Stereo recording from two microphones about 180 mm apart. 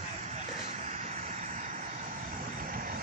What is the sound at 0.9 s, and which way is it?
Vehicle, 40° right (ahead or behind).